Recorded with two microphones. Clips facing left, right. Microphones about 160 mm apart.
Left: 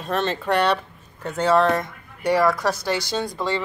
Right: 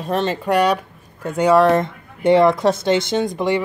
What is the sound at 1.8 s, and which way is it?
Speech, 25° right (ahead or behind).